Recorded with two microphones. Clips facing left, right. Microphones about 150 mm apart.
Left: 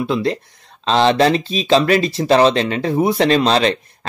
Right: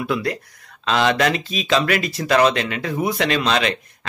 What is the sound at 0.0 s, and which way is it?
Speech, 25° left (ahead or behind).